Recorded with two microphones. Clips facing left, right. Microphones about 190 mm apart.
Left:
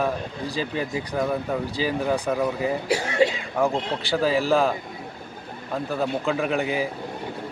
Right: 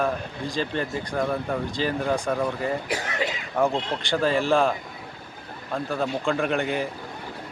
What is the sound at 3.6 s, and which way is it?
Speech, centre (ahead or behind).